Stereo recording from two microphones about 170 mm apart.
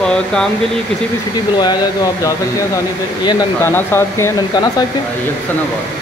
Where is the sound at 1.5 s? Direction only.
25° left (ahead or behind).